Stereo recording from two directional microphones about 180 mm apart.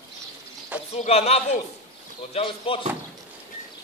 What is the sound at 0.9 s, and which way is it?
Speech, 35° left (ahead or behind).